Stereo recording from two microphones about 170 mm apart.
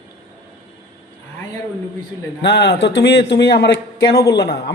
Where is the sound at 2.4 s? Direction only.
80° left.